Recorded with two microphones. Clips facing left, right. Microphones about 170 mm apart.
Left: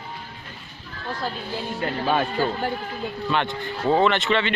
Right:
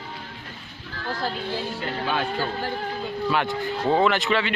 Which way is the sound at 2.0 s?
45° left (ahead or behind).